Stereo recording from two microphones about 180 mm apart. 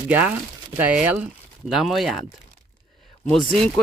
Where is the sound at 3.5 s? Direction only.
5° left (ahead or behind).